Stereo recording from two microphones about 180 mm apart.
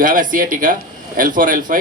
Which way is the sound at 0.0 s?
50° right (ahead or behind).